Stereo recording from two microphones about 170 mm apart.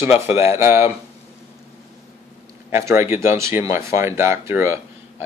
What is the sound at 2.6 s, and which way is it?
Speech, 15° right (ahead or behind).